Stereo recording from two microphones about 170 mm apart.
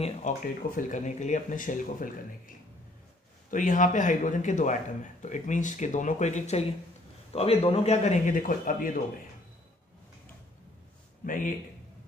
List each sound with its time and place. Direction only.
0.0 s a man's voice: 50° left (ahead or behind)
11.2 s speech: 50° left (ahead or behind)